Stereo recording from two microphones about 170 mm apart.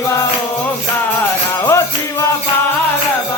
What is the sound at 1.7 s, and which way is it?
Music, 15° left (ahead or behind).